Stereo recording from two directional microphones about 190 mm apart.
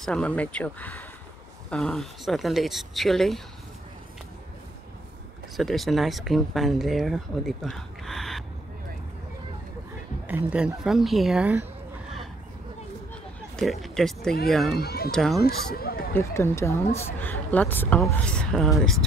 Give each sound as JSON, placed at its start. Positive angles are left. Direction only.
{"t": 0.0, "sound": "speech", "side_deg": 5}
{"t": 5.6, "sound": "speech", "side_deg": 0}
{"t": 10.2, "sound": "speech", "side_deg": -10}
{"t": 13.6, "sound": "speech", "side_deg": 0}
{"t": 14.8, "sound": "speech", "side_deg": 55}
{"t": 15.0, "sound": "speech", "side_deg": 0}
{"t": 15.4, "sound": "speech", "side_deg": 55}
{"t": 16.1, "sound": "speech", "side_deg": 15}